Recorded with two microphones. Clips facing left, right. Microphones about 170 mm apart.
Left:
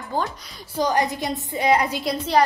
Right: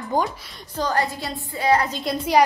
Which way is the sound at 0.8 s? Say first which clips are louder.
Left 2 dB; 15° left (ahead or behind).